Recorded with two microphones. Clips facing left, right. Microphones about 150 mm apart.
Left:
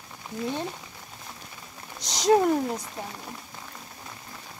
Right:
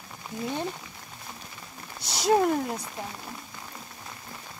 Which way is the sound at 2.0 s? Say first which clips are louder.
Left 3 dB; 5° right (ahead or behind).